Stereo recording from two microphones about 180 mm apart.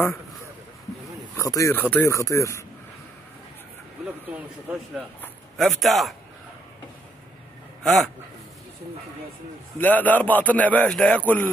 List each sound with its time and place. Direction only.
1.3 s a man's voice: 15° left (ahead or behind)
4.3 s speech: 10° right (ahead or behind)
7.8 s a man's voice: centre (ahead or behind)
9.8 s a man's voice: 10° left (ahead or behind)